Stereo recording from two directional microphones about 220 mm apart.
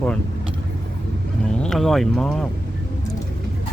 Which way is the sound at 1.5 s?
Centre (ahead or behind).